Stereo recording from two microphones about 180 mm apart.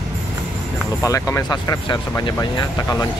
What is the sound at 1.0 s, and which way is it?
Speech, 20° left (ahead or behind).